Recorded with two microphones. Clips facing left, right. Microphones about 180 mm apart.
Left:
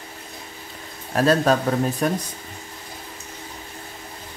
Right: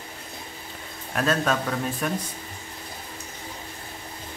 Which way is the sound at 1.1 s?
35° left (ahead or behind).